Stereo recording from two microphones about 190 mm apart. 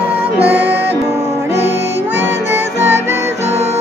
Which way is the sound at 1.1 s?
35° right (ahead or behind).